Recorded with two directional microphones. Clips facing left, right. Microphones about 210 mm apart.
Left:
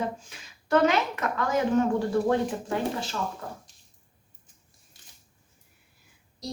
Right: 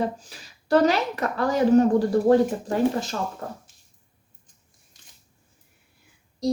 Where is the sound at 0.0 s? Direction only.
35° right (ahead or behind).